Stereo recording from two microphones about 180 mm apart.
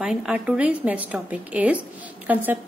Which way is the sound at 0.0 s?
5° right (ahead or behind).